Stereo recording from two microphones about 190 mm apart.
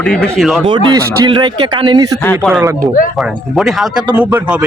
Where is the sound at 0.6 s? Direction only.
25° right (ahead or behind).